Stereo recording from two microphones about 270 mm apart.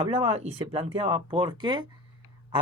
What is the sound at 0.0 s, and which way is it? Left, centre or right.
A man's voice, right.